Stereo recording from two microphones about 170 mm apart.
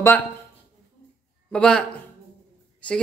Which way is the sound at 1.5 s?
5° left (ahead or behind).